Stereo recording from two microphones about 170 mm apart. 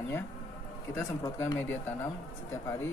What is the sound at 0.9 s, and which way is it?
Speech, 20° left (ahead or behind).